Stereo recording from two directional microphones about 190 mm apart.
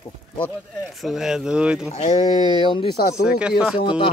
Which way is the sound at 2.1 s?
20° right (ahead or behind).